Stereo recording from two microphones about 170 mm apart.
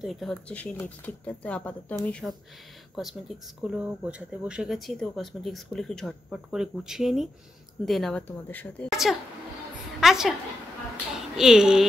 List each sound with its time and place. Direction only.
0.0 s speech: centre (ahead or behind)
8.8 s a woman's voice: centre (ahead or behind)